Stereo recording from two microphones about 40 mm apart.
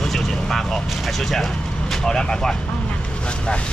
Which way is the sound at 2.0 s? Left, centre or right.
Centre.